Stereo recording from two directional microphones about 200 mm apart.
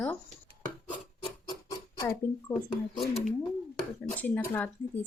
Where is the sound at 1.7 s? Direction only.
15° left (ahead or behind).